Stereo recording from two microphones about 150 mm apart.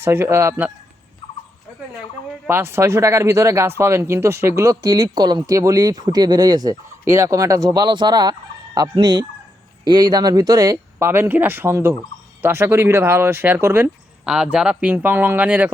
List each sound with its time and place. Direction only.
0.0 s speech: 20° right (ahead or behind)
2.5 s speech: 15° right (ahead or behind)
14.3 s speech: 5° right (ahead or behind)